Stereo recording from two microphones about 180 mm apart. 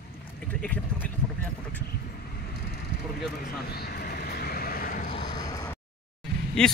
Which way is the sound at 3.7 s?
60° left (ahead or behind).